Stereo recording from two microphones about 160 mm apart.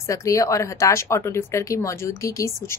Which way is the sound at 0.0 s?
20° left (ahead or behind).